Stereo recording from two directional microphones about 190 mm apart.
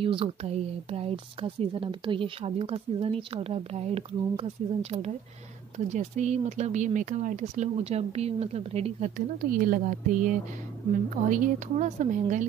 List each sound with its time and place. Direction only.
0.0 s a woman's voice: 30° right (ahead or behind)
5.9 s speech: 40° right (ahead or behind)